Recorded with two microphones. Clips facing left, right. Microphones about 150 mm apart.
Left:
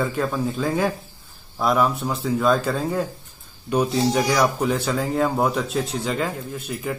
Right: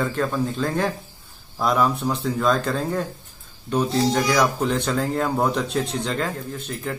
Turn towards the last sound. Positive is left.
turn(degrees=5)  # may be behind; listen again after turning